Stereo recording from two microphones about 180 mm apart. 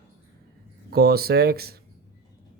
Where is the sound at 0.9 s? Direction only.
60° right (ahead or behind).